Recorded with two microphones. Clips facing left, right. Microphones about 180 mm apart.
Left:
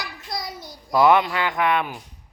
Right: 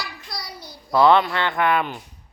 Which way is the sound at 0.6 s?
15° left (ahead or behind).